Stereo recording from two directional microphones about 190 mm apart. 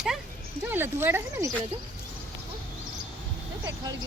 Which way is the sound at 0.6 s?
10° right (ahead or behind).